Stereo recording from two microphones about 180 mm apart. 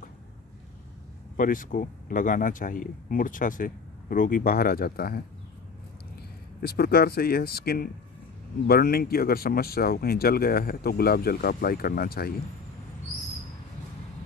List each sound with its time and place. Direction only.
1.3 s speech: 50° left (ahead or behind)
6.6 s speech: 60° left (ahead or behind)